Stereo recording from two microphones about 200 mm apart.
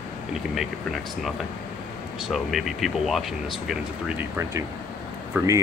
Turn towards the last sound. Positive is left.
turn(degrees=-15)  # may be behind; listen again after turning